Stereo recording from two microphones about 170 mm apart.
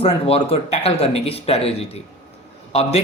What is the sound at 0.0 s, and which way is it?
Speech, 35° left (ahead or behind).